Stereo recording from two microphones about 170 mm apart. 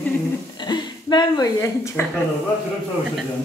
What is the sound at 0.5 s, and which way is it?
Speech, 25° left (ahead or behind).